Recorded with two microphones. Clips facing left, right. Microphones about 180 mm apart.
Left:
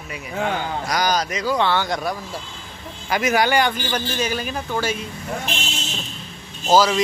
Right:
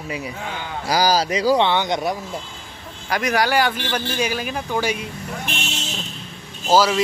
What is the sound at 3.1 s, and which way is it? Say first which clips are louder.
Speech: left 1 dB; centre (ahead or behind).